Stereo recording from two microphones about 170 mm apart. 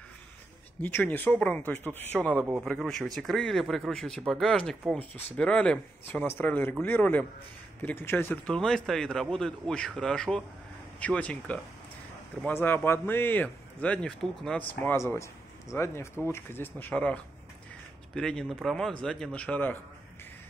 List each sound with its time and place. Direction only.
0.8 s speech: 10° left (ahead or behind)